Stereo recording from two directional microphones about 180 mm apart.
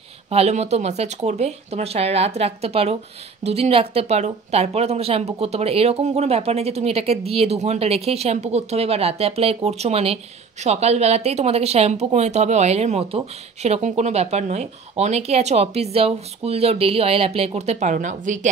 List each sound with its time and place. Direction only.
0.3 s speech: 35° right (ahead or behind)